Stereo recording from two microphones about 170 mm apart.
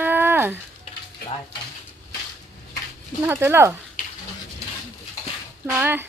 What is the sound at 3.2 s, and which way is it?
Speech, 15° right (ahead or behind).